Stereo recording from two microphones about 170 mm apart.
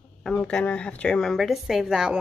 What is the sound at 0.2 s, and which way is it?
A woman's voice, 5° left (ahead or behind).